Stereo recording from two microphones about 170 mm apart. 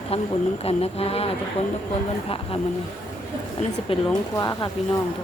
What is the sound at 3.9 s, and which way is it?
Speech, 25° left (ahead or behind).